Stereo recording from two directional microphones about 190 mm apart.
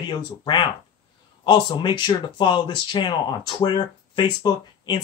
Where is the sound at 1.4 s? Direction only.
25° left (ahead or behind).